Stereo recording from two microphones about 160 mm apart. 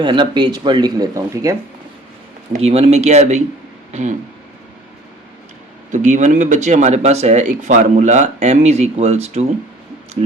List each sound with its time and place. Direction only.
0.0 s speech: 30° right (ahead or behind)
2.5 s speech: 40° right (ahead or behind)
5.9 s speech: 50° right (ahead or behind)